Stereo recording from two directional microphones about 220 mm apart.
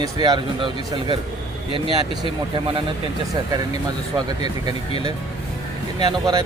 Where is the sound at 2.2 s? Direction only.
20° right (ahead or behind).